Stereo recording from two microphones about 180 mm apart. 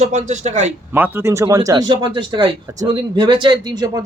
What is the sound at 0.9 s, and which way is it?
Speech, 10° right (ahead or behind).